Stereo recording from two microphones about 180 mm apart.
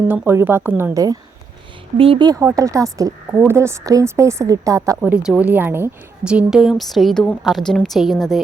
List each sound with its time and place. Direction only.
0.1 s a woman's voice: 10° right (ahead or behind)
4.9 s a woman's voice: 5° right (ahead or behind)